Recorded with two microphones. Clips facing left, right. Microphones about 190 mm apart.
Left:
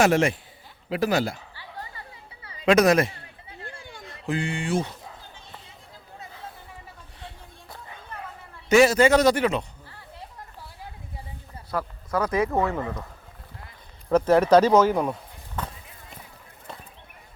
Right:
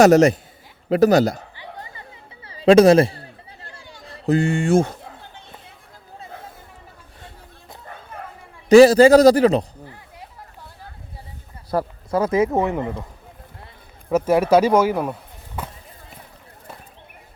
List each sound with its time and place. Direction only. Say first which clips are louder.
0.0 s a man's voice: right 8 dB; 40° right (ahead or behind)
1.5 s chatter: right 3 dB; 20° right (ahead or behind)
4.0 s a sound: right 9 dB; 35° right (ahead or behind); by 5.7 s 60° right (ahead or behind)
6.3 s chatter: right 3 dB; 50° right (ahead or behind)
8.7 s a man's voice: right 8 dB; 35° right (ahead or behind)
11.7 s a sound: right 6 dB; 35° right (ahead or behind)
12.2 s speech: right 5 dB; 25° right (ahead or behind)
14.1 s speech: right 1 dB; 10° right (ahead or behind)